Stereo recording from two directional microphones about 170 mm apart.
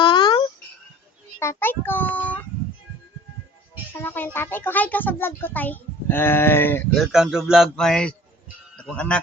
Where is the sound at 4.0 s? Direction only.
10° left (ahead or behind).